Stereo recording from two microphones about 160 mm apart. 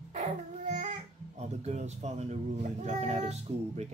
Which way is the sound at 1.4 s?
40° right (ahead or behind).